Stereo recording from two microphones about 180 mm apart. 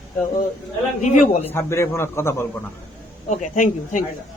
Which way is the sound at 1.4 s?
15° left (ahead or behind).